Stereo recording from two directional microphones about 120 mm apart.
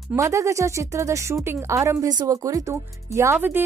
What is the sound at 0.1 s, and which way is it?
Speech, 25° right (ahead or behind).